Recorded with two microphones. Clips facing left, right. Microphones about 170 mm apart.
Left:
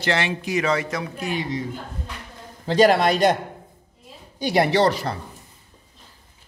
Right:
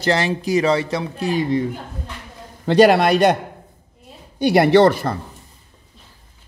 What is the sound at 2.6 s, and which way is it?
Speech, 65° right (ahead or behind).